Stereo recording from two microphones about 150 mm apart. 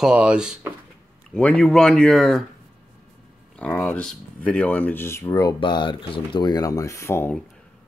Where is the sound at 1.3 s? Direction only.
5° left (ahead or behind).